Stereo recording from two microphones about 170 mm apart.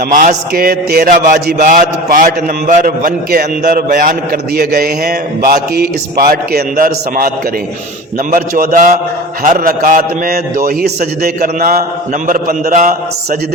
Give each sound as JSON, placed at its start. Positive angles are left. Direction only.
{"t": 0.1, "sound": "mantra", "side_deg": -55}
{"t": 8.3, "sound": "a man's voice", "side_deg": -55}
{"t": 10.7, "sound": "mantra", "side_deg": -65}
{"t": 12.3, "sound": "a man's voice", "side_deg": -55}